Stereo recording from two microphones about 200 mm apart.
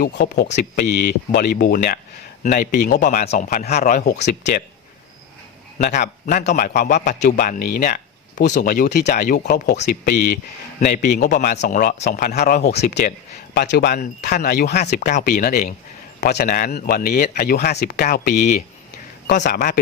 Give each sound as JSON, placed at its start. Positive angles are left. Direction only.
{"t": 0.0, "sound": "a man's voice", "side_deg": 45}
{"t": 6.2, "sound": "a man's voice", "side_deg": 40}
{"t": 12.7, "sound": "a man's voice", "side_deg": 55}